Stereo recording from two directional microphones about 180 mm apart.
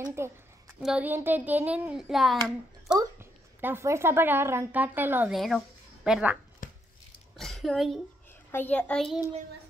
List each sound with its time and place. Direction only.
0.0 s a woman's voice: 15° right (ahead or behind)
0.7 s a child's voice: 5° right (ahead or behind)
3.0 s a woman's voice: 15° right (ahead or behind)
5.3 s speech: centre (ahead or behind)
6.6 s chopping: 50° left (ahead or behind)
7.3 s a woman's voice: centre (ahead or behind)
8.3 s a child's voice: 10° left (ahead or behind)